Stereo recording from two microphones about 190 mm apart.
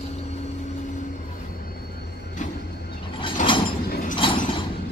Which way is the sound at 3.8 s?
50° left (ahead or behind).